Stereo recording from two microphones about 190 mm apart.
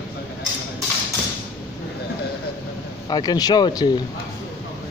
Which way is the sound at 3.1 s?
20° left (ahead or behind).